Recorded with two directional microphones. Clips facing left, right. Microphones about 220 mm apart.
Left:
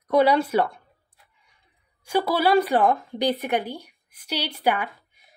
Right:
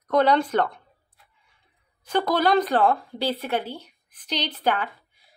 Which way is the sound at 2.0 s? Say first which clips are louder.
Even; 10° left (ahead or behind).